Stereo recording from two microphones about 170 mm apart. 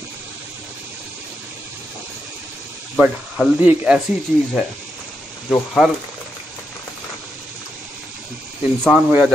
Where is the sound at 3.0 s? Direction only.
5° right (ahead or behind).